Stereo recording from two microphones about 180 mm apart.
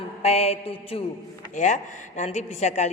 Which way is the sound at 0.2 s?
35° left (ahead or behind).